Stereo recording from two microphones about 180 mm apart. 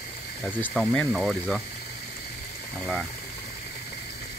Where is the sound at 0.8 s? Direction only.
5° left (ahead or behind).